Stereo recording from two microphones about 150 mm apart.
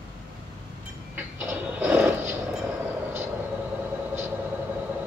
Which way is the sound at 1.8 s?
15° right (ahead or behind).